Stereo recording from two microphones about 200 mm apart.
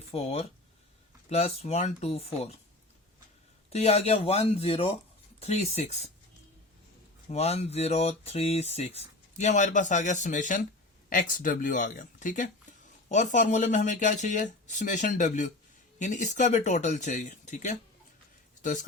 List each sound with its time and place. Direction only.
0.1 s speech: 30° left (ahead or behind)
3.7 s speech: 30° left (ahead or behind)
7.3 s speech: 30° left (ahead or behind)